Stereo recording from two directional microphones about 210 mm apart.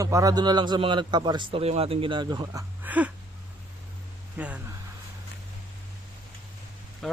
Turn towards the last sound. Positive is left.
turn(degrees=0)  # may be behind; listen again after turning